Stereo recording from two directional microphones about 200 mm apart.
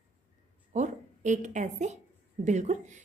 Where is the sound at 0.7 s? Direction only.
35° right (ahead or behind).